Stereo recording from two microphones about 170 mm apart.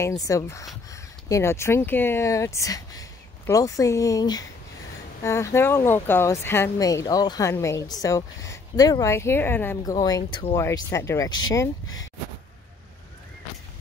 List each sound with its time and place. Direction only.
0.0 s speech: 20° left (ahead or behind)